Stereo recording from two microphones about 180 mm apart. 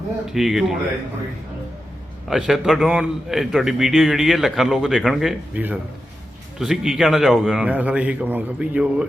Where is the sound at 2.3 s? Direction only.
Centre (ahead or behind).